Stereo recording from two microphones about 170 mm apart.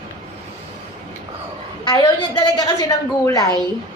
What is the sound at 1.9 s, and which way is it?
A woman's voice, 25° left (ahead or behind).